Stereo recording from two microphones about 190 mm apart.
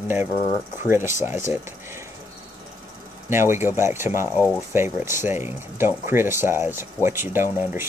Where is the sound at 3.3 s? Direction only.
15° right (ahead or behind).